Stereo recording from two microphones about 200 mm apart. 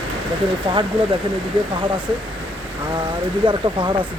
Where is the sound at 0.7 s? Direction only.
25° right (ahead or behind).